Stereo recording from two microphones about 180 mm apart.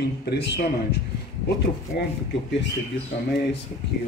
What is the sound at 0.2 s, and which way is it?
Speech, 65° left (ahead or behind).